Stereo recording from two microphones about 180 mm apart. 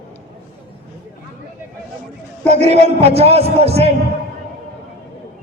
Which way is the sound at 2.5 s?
35° right (ahead or behind).